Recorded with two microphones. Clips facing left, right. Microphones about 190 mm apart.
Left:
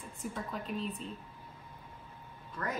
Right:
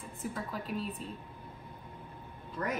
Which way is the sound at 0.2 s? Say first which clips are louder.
Right 1 dB; 5° right (ahead or behind).